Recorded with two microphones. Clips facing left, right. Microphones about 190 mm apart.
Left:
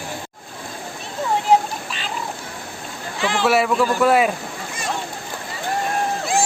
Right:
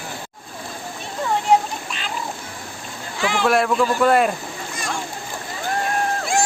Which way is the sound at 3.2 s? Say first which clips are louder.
Even; centre (ahead or behind).